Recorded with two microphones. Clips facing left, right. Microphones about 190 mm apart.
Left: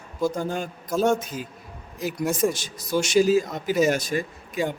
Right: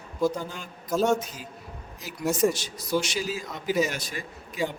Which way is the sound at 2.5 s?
45° left (ahead or behind).